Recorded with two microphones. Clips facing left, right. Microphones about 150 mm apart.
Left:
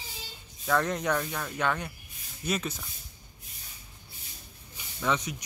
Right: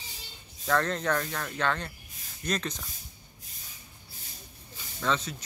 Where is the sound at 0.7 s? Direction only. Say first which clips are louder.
Even; 10° left (ahead or behind).